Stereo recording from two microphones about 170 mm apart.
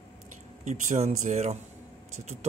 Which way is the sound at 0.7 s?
45° right (ahead or behind).